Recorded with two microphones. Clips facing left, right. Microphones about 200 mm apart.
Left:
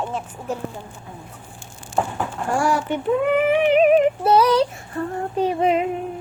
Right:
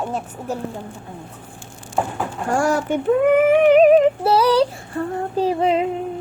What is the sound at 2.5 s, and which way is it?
Female singing, 45° right (ahead or behind).